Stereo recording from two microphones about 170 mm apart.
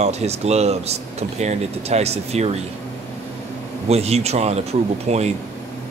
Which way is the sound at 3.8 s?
40° right (ahead or behind).